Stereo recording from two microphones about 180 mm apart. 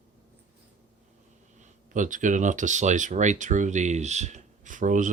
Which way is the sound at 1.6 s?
45° right (ahead or behind).